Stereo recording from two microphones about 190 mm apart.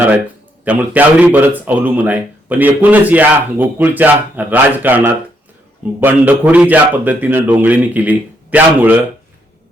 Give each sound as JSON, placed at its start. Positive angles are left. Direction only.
{"t": 0.6, "sound": "speech", "side_deg": -10}